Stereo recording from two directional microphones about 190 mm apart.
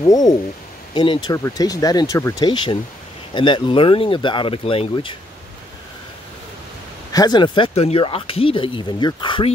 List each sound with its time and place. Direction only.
0.0 s speech: 20° left (ahead or behind)
7.1 s speech: 20° left (ahead or behind)